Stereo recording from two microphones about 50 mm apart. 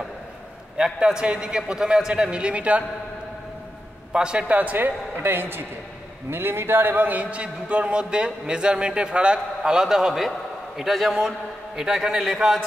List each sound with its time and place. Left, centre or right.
0.7 s a man's voice: centre
4.1 s a man's voice: centre
11.1 s a man's voice: centre